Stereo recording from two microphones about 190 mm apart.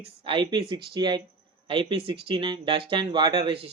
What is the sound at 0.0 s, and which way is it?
Speech, 25° right (ahead or behind).